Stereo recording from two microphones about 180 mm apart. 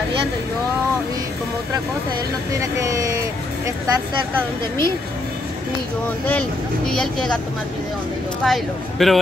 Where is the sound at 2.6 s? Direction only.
20° right (ahead or behind).